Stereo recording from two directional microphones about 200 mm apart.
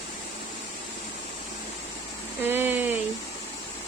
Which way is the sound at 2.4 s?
10° right (ahead or behind).